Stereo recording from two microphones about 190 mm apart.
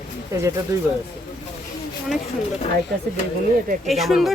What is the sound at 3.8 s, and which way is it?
Speech, centre (ahead or behind).